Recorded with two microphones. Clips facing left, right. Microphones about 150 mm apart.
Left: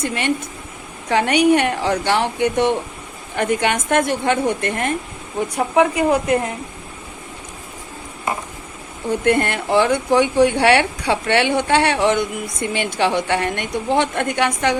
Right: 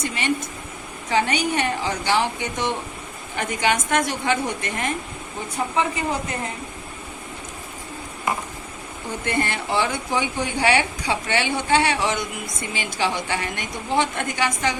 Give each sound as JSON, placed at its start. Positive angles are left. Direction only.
{"t": 0.0, "sound": "a woman's voice", "side_deg": 60}
{"t": 9.2, "sound": "speech", "side_deg": 60}